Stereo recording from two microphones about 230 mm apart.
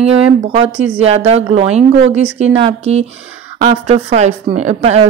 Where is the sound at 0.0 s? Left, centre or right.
Right.